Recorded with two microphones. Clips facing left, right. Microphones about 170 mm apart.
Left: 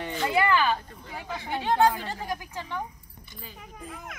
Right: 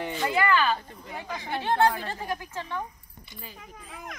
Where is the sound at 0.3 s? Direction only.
20° left (ahead or behind).